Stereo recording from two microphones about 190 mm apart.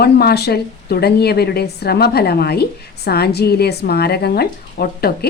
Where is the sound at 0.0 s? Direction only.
55° left (ahead or behind).